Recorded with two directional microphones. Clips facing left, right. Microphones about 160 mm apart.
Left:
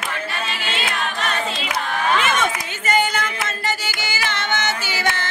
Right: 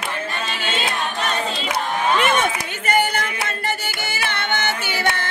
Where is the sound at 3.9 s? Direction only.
55° right (ahead or behind).